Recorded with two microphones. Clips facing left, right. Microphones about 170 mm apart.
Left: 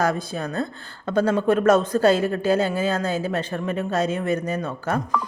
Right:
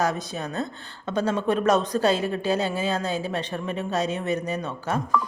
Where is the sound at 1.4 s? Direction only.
45° left (ahead or behind).